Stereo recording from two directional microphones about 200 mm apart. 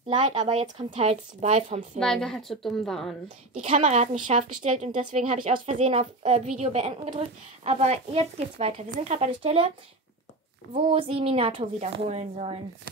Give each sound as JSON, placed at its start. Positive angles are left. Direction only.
{"t": 0.2, "sound": "speech", "side_deg": -35}
{"t": 2.0, "sound": "a woman's voice", "side_deg": 5}
{"t": 3.5, "sound": "speech", "side_deg": -35}
{"t": 10.7, "sound": "speech", "side_deg": -30}